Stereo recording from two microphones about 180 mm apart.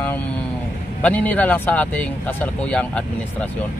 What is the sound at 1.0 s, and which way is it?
A man's voice, 10° left (ahead or behind).